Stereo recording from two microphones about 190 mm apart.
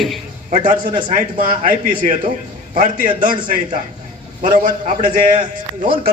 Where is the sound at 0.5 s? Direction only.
45° right (ahead or behind).